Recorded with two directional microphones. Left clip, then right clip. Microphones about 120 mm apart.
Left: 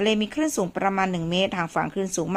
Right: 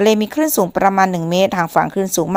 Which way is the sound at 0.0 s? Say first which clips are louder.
Right 9 dB; 40° right (ahead or behind).